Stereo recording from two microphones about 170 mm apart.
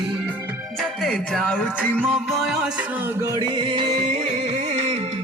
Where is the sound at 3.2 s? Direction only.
20° right (ahead or behind); by 5.0 s 35° right (ahead or behind).